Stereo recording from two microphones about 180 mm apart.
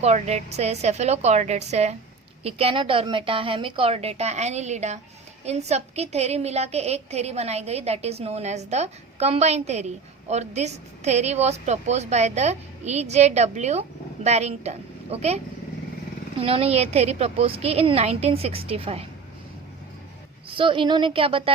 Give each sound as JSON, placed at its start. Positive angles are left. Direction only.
{"t": 0.0, "sound": "a woman's voice", "side_deg": -40}
{"t": 16.4, "sound": "a woman's voice", "side_deg": -35}
{"t": 20.5, "sound": "a woman's voice", "side_deg": -30}